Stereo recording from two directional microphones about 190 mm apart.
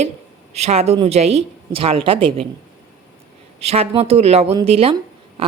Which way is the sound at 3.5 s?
35° right (ahead or behind).